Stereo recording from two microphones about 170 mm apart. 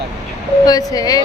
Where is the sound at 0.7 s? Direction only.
20° left (ahead or behind).